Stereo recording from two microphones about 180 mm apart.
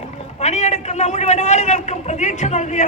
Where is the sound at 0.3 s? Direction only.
40° left (ahead or behind).